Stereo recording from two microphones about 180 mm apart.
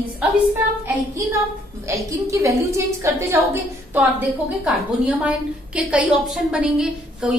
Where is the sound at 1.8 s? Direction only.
15° right (ahead or behind).